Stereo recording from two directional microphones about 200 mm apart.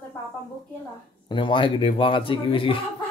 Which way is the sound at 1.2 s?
25° left (ahead or behind).